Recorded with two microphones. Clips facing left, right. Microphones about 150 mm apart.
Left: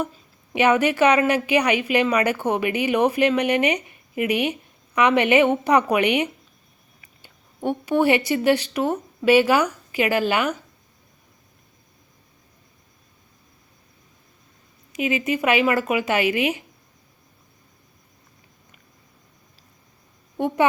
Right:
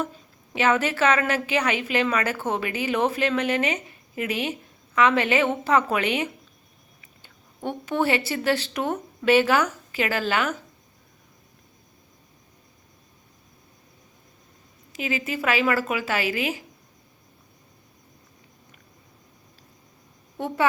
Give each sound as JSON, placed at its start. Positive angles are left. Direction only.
{"t": 0.5, "sound": "a woman's voice", "side_deg": 15}
{"t": 14.9, "sound": "a woman's voice", "side_deg": 15}